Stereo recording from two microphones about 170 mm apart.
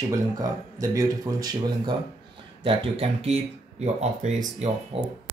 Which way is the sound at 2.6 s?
35° right (ahead or behind).